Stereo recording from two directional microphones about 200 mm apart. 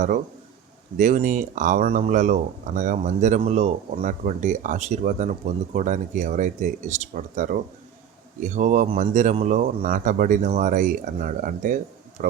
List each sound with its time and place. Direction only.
0.9 s speech: 40° right (ahead or behind)